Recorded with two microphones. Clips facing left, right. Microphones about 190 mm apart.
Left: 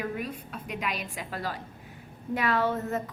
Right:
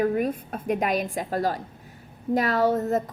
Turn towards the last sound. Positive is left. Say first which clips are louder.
# right 6 dB
turn(degrees=-40)  # may be behind; listen again after turning